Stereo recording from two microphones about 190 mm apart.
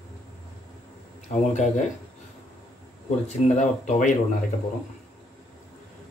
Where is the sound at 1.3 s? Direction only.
35° left (ahead or behind).